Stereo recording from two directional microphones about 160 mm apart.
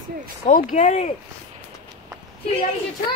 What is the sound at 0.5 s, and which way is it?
Speech, 50° left (ahead or behind).